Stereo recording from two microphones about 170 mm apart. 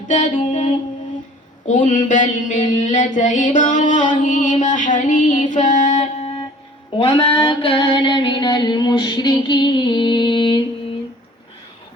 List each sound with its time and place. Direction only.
0.1 s mantra: 45° left (ahead or behind)
7.0 s music: 25° left (ahead or behind)